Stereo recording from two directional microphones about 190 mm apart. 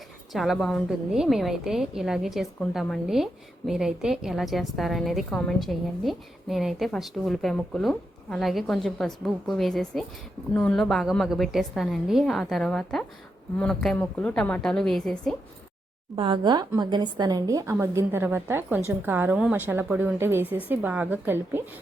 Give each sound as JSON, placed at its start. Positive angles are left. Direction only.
{"t": 0.3, "sound": "a woman's voice", "side_deg": 0}
{"t": 16.1, "sound": "a woman's voice", "side_deg": -25}